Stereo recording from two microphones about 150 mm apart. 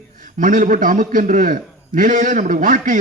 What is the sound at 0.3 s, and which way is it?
A man's voice, 65° right (ahead or behind).